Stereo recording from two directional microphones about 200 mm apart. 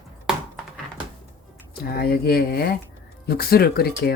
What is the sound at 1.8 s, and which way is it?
Speech, 50° left (ahead or behind).